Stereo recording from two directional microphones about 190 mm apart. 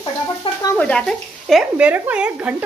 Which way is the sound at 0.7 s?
5° left (ahead or behind).